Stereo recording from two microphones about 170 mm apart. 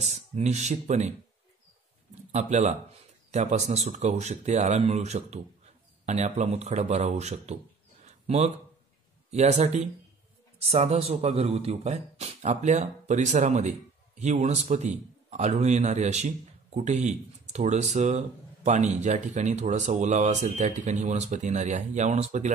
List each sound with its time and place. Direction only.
0.0 s a man's voice: 40° right (ahead or behind)
2.3 s speech: 40° right (ahead or behind)
8.0 s a sound: 40° right (ahead or behind)
9.3 s a man's voice: 40° right (ahead or behind)